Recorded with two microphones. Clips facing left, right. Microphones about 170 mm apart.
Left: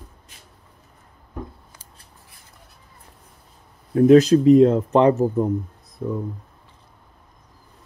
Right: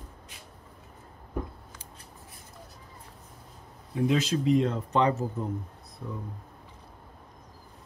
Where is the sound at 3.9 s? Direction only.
55° left (ahead or behind).